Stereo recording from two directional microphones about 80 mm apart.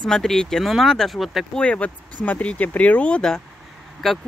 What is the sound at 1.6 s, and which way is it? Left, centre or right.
Speech, centre.